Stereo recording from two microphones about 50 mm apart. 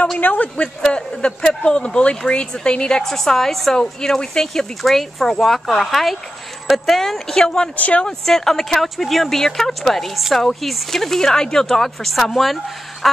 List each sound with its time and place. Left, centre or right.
0.2 s speech: left
0.8 s speech: centre
3.0 s speech: centre
7.7 s speech: left
8.3 s speech: centre